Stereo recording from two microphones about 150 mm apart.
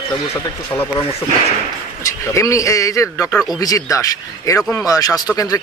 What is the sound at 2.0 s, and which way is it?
Speech, 20° left (ahead or behind).